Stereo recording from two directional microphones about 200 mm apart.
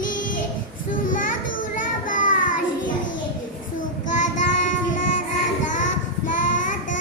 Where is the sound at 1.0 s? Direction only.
40° left (ahead or behind).